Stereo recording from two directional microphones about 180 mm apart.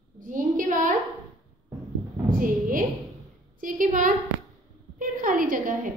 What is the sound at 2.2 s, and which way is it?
A woman's voice, 50° right (ahead or behind).